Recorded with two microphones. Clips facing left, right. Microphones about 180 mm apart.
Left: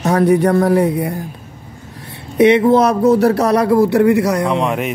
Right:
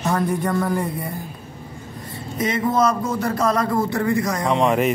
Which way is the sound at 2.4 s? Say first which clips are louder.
Left 10 dB; 70° left (ahead or behind).